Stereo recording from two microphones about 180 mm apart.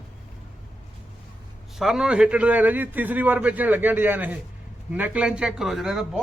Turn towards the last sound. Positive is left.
turn(degrees=-5)  # may be behind; listen again after turning